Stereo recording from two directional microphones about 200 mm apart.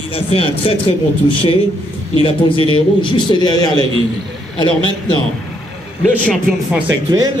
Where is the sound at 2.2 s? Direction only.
25° left (ahead or behind).